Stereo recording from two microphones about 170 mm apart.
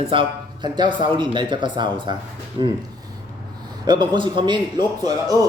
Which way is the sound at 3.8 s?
25° right (ahead or behind).